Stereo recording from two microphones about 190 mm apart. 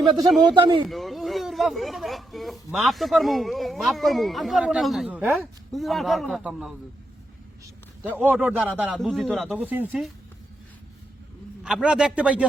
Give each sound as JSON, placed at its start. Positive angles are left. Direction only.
{"t": 0.0, "sound": "a man's voice", "side_deg": -25}
{"t": 0.9, "sound": "a man's voice", "side_deg": 0}
{"t": 8.0, "sound": "a man's voice", "side_deg": -10}
{"t": 11.6, "sound": "a man's voice", "side_deg": -5}